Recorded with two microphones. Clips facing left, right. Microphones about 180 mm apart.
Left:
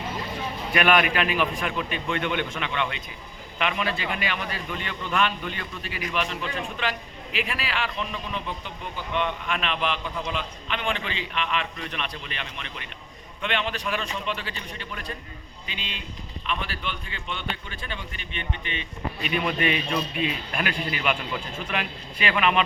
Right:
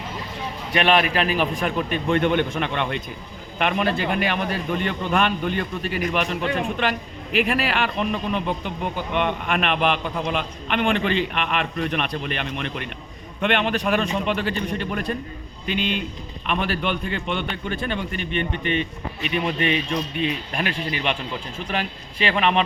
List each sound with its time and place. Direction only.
0.7 s a man's voice: 30° right (ahead or behind); by 18.9 s 55° right (ahead or behind)
19.5 s a man's voice: 30° right (ahead or behind)